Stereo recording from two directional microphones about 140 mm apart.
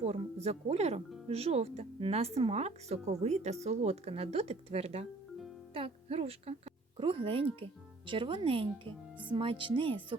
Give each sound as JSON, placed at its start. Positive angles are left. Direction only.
{"t": 0.0, "sound": "speech", "side_deg": -50}